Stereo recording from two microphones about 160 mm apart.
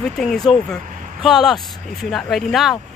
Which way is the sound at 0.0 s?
5° left (ahead or behind).